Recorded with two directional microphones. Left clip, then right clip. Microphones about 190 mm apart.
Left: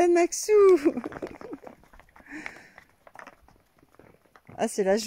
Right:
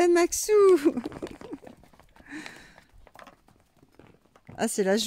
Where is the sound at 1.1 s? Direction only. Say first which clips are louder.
Left 1 dB; 10° right (ahead or behind).